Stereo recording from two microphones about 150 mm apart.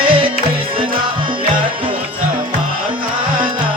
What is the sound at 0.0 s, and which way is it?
Music, 35° right (ahead or behind).